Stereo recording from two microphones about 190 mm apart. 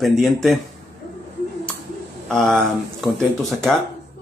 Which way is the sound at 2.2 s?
Centre (ahead or behind).